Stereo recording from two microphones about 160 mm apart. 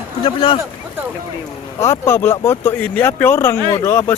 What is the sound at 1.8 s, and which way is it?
Speech, 20° left (ahead or behind).